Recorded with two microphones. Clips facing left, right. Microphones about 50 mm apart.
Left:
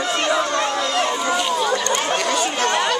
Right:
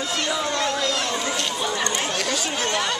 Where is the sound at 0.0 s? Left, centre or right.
Left.